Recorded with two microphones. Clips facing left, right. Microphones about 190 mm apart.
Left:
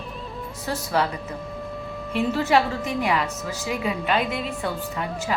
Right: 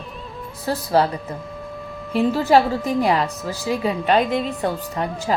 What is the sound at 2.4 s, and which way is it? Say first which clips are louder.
A woman's voice: right 5 dB; 35° right (ahead or behind).